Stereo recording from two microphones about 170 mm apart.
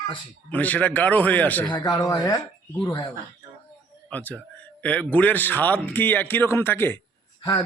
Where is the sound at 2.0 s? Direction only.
20° left (ahead or behind).